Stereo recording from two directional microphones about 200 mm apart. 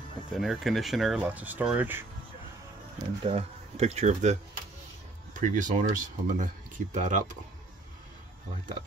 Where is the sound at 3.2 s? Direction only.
35° right (ahead or behind).